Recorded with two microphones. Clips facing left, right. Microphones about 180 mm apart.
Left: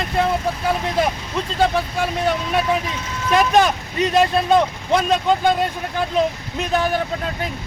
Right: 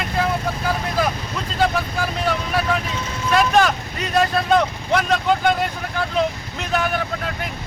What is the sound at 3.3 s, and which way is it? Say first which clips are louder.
Speech: left 1 dB; 15° left (ahead or behind).